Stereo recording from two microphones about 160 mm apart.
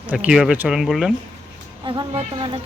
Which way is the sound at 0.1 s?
5° right (ahead or behind).